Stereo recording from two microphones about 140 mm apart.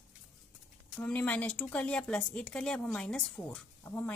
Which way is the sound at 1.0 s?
10° left (ahead or behind).